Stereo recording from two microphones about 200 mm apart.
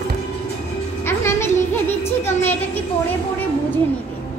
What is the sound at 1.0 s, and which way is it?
Music, 10° left (ahead or behind).